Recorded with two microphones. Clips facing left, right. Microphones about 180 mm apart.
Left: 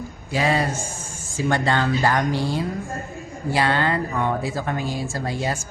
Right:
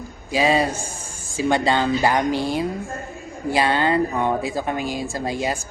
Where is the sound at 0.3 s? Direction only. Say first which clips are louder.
Right 3 dB; 15° right (ahead or behind).